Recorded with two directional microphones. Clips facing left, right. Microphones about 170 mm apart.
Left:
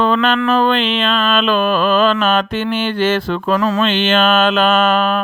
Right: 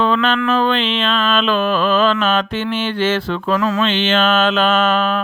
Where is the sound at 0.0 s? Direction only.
45° left (ahead or behind).